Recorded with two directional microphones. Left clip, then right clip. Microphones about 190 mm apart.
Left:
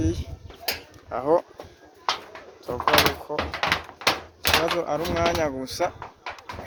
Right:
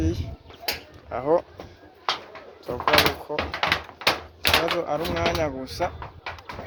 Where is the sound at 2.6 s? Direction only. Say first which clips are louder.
Even; 10° left (ahead or behind).